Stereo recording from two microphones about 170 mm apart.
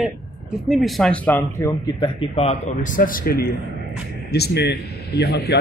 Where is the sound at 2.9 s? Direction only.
55° left (ahead or behind).